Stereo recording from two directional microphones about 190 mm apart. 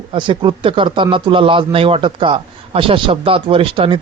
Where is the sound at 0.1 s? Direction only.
25° right (ahead or behind).